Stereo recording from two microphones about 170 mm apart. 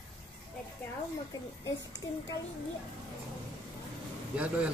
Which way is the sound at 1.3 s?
20° left (ahead or behind).